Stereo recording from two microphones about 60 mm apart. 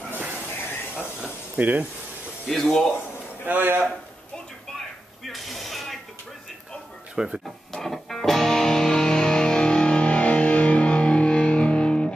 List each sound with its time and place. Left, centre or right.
0.1 s hiss: right
0.5 s a sound: left
1.6 s speech: right
2.5 s speech: centre
3.0 s a man's voice: right
5.2 s a sound: centre
7.2 s speech: centre
7.4 s music: centre